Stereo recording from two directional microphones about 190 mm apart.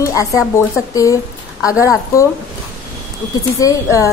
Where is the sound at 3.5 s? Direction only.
15° left (ahead or behind).